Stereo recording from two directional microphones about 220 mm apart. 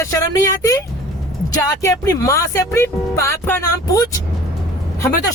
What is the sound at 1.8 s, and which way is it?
Speech, 15° left (ahead or behind).